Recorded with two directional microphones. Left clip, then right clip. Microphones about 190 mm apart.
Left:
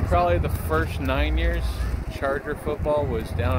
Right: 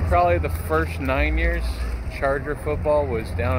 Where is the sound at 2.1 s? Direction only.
20° right (ahead or behind).